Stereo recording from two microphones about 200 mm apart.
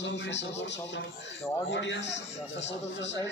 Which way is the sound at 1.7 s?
60° left (ahead or behind).